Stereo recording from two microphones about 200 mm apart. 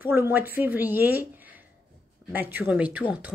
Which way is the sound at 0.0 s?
10° right (ahead or behind).